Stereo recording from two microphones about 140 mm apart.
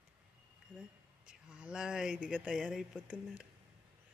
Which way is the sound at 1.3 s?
5° right (ahead or behind).